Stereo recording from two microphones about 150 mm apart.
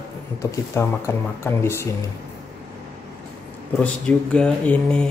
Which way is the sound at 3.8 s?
5° left (ahead or behind).